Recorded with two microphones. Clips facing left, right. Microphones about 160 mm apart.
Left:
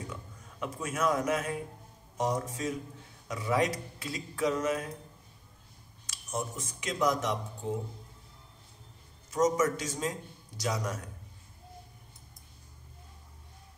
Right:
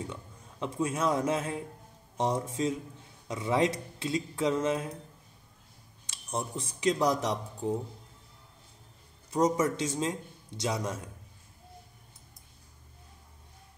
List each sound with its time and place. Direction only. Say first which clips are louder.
0.0 s a man's voice: right 2 dB; 25° right (ahead or behind)
6.0 s speech: right 1 dB; 30° right (ahead or behind)
9.3 s a man's voice: even; 30° right (ahead or behind)